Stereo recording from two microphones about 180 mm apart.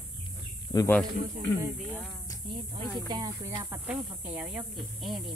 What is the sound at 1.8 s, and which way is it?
Speech, 5° left (ahead or behind).